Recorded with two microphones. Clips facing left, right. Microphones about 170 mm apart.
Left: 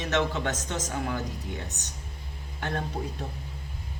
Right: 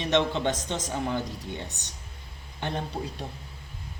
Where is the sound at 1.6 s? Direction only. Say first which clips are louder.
Left 2 dB; 65° right (ahead or behind).